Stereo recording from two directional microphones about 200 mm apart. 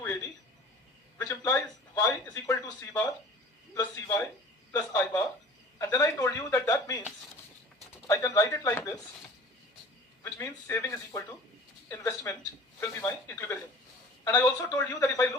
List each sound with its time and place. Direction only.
1.2 s a sound: 15° left (ahead or behind)
4.7 s speech: 15° left (ahead or behind)
10.2 s speech: 10° left (ahead or behind)